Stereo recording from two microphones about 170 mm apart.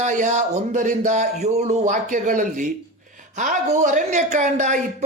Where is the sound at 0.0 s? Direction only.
45° right (ahead or behind).